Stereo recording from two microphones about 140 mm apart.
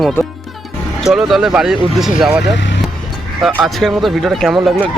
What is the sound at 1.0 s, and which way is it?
Speech, 5° right (ahead or behind).